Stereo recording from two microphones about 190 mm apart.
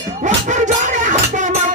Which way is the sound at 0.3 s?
40° right (ahead or behind).